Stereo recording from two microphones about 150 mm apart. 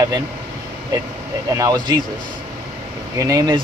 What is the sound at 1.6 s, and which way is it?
Speech, 25° right (ahead or behind).